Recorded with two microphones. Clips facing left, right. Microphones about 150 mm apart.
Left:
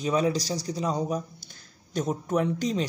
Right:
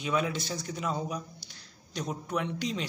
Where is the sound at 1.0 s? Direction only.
45° left (ahead or behind).